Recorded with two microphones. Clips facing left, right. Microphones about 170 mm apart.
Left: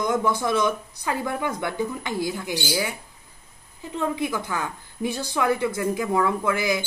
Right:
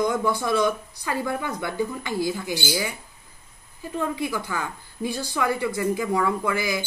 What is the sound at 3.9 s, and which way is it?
Speech, 20° left (ahead or behind).